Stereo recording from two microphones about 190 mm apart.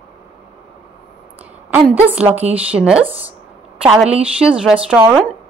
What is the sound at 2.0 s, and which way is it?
A woman's voice, 10° right (ahead or behind).